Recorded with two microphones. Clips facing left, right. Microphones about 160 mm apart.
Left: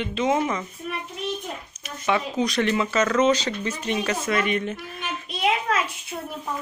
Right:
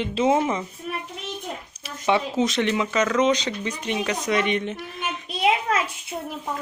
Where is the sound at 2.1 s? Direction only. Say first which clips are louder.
Right 2 dB; 25° right (ahead or behind).